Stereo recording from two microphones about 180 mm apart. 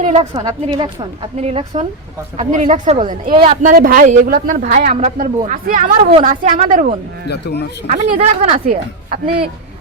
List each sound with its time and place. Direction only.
0.0 s a woman's voice: 40° right (ahead or behind)
0.3 s a woman's voice: 20° right (ahead or behind); by 6.9 s 45° right (ahead or behind)
7.3 s a man's voice: 65° left (ahead or behind)
7.9 s a woman's voice: 40° right (ahead or behind)